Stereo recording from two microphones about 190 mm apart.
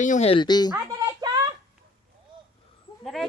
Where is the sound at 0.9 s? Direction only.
20° right (ahead or behind).